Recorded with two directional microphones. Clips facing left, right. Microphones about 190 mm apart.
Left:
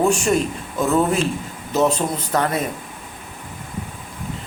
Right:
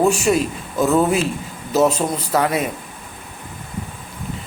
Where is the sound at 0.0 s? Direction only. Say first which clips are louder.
Right 1 dB; 5° right (ahead or behind).